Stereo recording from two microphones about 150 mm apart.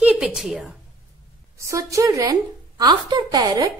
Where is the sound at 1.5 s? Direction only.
20° right (ahead or behind).